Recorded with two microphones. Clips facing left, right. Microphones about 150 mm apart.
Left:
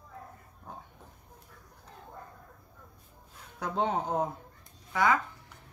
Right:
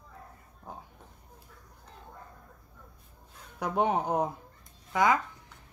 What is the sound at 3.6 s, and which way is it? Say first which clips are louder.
Speech: right 3 dB; 15° right (ahead or behind).